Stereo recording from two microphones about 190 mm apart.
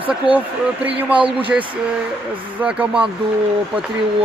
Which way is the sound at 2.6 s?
5° right (ahead or behind).